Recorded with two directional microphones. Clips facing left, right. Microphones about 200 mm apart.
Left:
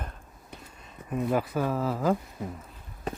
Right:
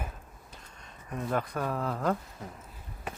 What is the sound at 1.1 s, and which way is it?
Speech, 5° left (ahead or behind).